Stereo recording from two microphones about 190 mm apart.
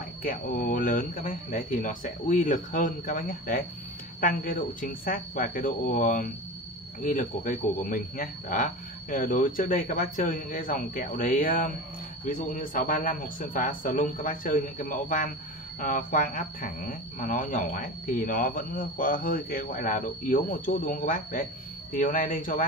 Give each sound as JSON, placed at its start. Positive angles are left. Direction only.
{"t": 0.2, "sound": "speech", "side_deg": 45}